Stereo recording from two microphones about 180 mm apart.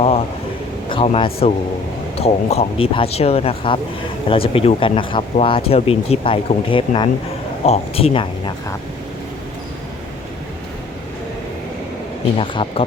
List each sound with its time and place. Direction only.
0.9 s speech: 30° left (ahead or behind)
12.4 s speech: 30° left (ahead or behind)